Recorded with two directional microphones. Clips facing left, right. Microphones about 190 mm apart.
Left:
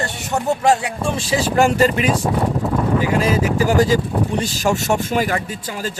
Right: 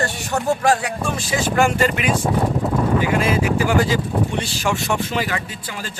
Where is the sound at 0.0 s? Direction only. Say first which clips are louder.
Even; 20° left (ahead or behind).